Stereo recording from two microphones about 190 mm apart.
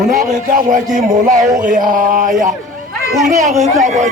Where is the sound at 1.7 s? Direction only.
45° right (ahead or behind).